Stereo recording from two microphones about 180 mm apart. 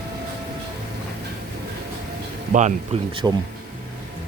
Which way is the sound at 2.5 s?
40° right (ahead or behind).